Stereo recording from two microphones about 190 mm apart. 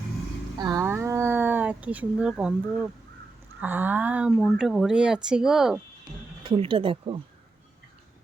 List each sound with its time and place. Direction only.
0.6 s speech: 20° right (ahead or behind)
3.6 s speech: 10° right (ahead or behind)
6.4 s speech: 30° right (ahead or behind)